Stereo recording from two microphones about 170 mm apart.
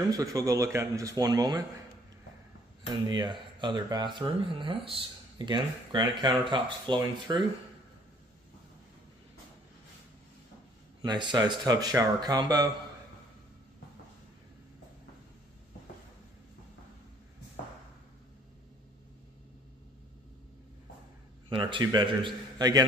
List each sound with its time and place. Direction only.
0.1 s speech: 20° right (ahead or behind)
3.1 s speech: 25° right (ahead or behind)
11.0 s speech: 25° right (ahead or behind)
21.5 s speech: 30° right (ahead or behind)